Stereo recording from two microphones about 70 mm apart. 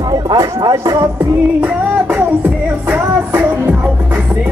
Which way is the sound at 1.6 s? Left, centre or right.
Centre.